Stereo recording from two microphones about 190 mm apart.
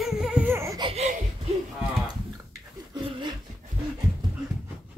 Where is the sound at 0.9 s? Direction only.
35° right (ahead or behind).